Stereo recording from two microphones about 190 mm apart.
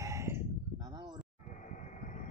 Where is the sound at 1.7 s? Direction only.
40° left (ahead or behind).